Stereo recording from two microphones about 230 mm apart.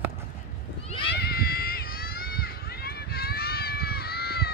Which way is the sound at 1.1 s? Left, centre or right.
Left.